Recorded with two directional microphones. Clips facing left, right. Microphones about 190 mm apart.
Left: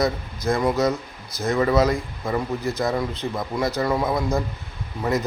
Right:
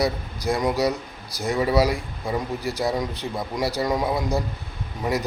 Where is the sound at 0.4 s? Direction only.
15° right (ahead or behind).